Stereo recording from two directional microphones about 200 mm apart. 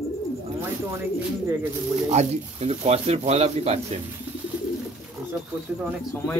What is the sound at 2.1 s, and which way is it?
Speech, 30° right (ahead or behind).